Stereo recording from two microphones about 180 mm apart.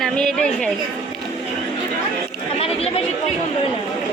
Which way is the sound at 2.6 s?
35° left (ahead or behind).